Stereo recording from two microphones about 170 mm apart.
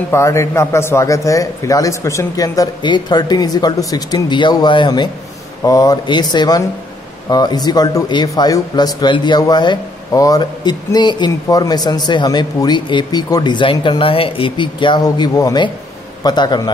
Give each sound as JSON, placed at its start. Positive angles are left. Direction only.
{"t": 0.1, "sound": "speech", "side_deg": 15}